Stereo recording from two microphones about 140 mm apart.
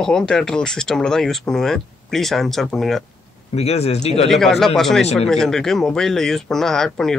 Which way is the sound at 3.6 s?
50° left (ahead or behind).